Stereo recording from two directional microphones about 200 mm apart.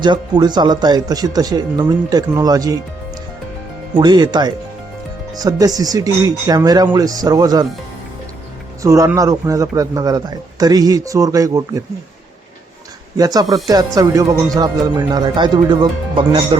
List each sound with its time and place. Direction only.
0.0 s speech: 20° right (ahead or behind)
3.9 s speech: 20° right (ahead or behind)
8.8 s a man's voice: 15° right (ahead or behind)
13.1 s a man's voice: 20° right (ahead or behind)